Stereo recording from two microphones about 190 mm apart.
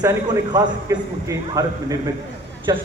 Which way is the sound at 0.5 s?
15° right (ahead or behind).